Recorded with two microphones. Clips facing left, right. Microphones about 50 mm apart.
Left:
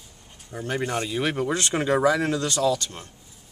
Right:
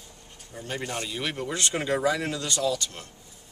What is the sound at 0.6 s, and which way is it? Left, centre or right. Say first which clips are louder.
Speech: left 6 dB; left.